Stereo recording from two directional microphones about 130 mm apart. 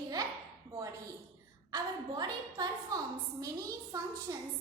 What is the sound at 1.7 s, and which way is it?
A woman's voice, 30° right (ahead or behind).